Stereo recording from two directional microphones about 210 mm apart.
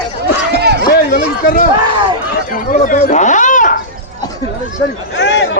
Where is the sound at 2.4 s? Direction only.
40° left (ahead or behind).